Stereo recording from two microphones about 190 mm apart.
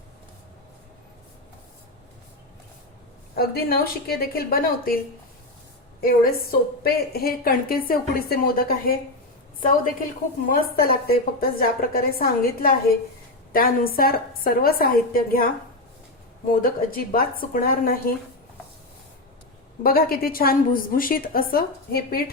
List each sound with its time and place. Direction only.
3.3 s a woman's voice: 55° left (ahead or behind)
6.0 s a woman's voice: 50° left (ahead or behind)
10.5 s a woman's voice: 50° left (ahead or behind)
16.5 s a woman's voice: 50° left (ahead or behind)
19.8 s a woman's voice: 50° left (ahead or behind)